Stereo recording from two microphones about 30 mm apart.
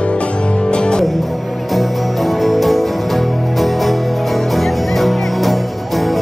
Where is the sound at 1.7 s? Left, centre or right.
Centre.